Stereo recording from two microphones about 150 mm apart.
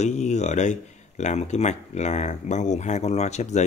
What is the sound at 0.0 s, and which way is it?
Speech, 50° left (ahead or behind).